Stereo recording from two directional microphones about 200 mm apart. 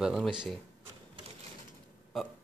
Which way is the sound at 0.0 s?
Centre (ahead or behind).